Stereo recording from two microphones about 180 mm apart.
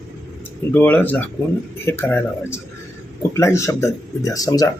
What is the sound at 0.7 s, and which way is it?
Speech, 10° left (ahead or behind).